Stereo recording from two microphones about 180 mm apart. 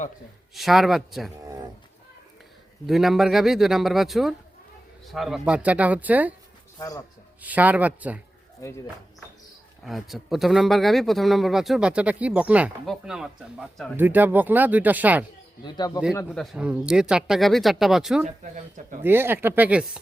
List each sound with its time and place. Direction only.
0.5 s speech: centre (ahead or behind)
2.8 s speech: centre (ahead or behind)
6.7 s speech: 20° left (ahead or behind)
7.4 s speech: 10° right (ahead or behind)
9.8 s speech: centre (ahead or behind)
13.9 s speech: 10° right (ahead or behind)
16.3 s speech: centre (ahead or behind)